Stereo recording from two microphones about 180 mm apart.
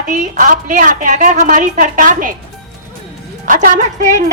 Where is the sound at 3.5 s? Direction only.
45° right (ahead or behind).